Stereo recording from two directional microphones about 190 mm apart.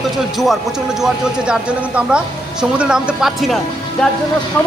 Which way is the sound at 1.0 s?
5° right (ahead or behind).